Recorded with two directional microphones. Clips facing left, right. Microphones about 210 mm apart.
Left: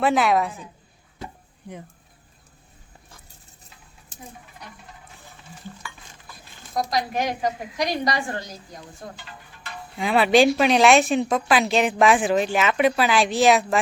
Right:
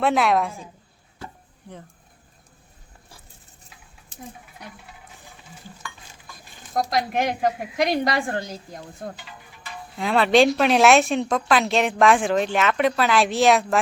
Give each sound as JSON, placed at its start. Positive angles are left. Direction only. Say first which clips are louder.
{"t": 0.0, "sound": "speech", "louder": "even", "side_deg": 0}
{"t": 1.7, "sound": "speech", "louder": "left 3 dB", "side_deg": 15}
{"t": 5.8, "sound": "stir", "louder": "right 1 dB", "side_deg": 10}
{"t": 6.7, "sound": "a woman's voice", "louder": "right 2 dB", "side_deg": -55}
{"t": 10.0, "sound": "speech", "louder": "even", "side_deg": 5}